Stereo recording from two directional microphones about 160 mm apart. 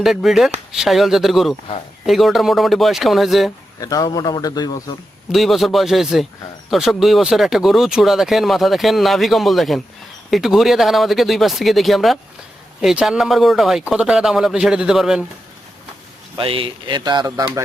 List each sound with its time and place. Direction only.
0.0 s speech: centre (ahead or behind)
3.8 s a man's voice: 20° left (ahead or behind)
5.3 s speech: centre (ahead or behind)
16.4 s speech: 35° right (ahead or behind)